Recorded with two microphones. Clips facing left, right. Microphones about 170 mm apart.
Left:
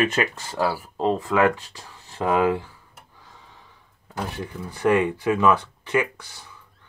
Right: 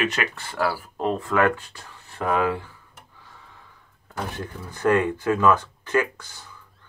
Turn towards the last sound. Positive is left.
turn(degrees=10)  # may be behind; listen again after turning